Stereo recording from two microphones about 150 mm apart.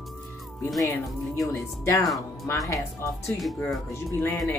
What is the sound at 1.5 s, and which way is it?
Speech, 20° left (ahead or behind).